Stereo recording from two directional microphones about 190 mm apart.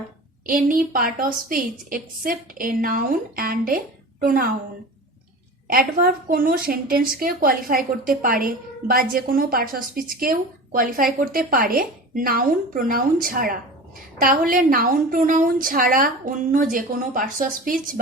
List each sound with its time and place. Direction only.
0.4 s a woman's voice: 50° right (ahead or behind)
5.6 s a woman's voice: 50° right (ahead or behind)